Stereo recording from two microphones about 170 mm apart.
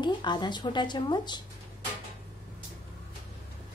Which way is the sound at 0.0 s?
25° left (ahead or behind).